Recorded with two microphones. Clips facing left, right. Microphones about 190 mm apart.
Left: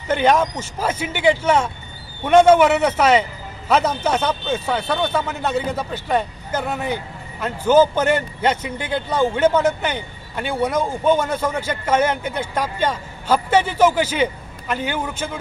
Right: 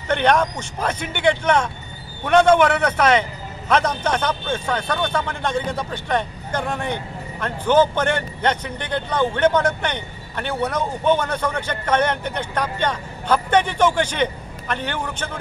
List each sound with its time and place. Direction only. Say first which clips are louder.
0.1 s a man's voice: left 1 dB; 5° left (ahead or behind)